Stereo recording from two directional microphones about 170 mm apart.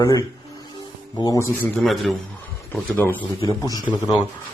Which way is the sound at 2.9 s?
10° left (ahead or behind).